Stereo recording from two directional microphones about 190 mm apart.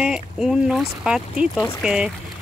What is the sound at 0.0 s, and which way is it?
Speech, 5° right (ahead or behind).